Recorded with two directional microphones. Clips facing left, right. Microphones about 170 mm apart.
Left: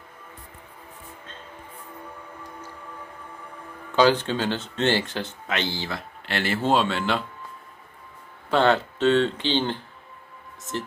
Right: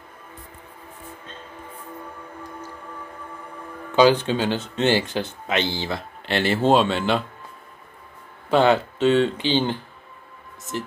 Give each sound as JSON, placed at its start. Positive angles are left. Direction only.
{"t": 3.9, "sound": "speech", "side_deg": -15}
{"t": 8.5, "sound": "speech", "side_deg": -10}